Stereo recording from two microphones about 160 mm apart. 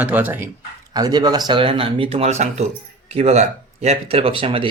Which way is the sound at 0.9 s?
25° right (ahead or behind).